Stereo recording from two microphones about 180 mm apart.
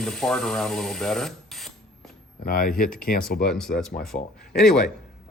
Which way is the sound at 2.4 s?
55° left (ahead or behind).